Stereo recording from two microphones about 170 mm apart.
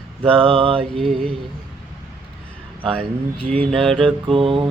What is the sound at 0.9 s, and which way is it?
Mantra, centre (ahead or behind).